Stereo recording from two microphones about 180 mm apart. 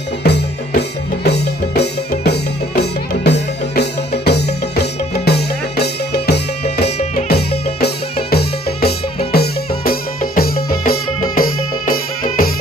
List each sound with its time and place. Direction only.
0.2 s drum: 65° left (ahead or behind)
2.8 s music: 70° left (ahead or behind)
7.2 s drum: 60° left (ahead or behind)
9.3 s music: 55° left (ahead or behind)